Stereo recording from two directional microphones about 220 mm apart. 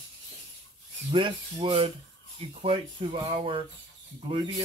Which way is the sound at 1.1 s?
20° right (ahead or behind).